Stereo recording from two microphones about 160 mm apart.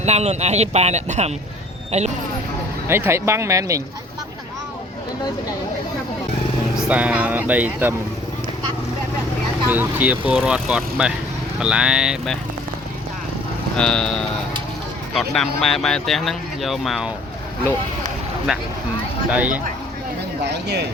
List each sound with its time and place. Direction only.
0.0 s speech: 45° right (ahead or behind)
2.8 s speech: 15° right (ahead or behind)
6.7 s speech: 5° right (ahead or behind)
9.6 s speech: 10° right (ahead or behind)
13.7 s speech: 5° left (ahead or behind)
18.5 s speech: centre (ahead or behind)
20.4 s speech: 90° right